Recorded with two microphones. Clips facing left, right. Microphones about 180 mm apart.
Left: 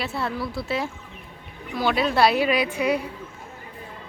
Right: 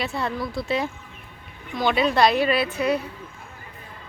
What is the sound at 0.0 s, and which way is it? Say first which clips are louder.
A woman's voice: right 1 dB; 5° left (ahead or behind).